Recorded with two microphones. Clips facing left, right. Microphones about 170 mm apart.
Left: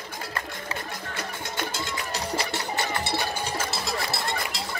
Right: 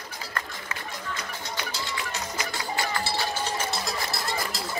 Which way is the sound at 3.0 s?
20° left (ahead or behind).